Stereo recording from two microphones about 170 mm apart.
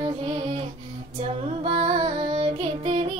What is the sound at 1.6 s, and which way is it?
Music, 30° right (ahead or behind).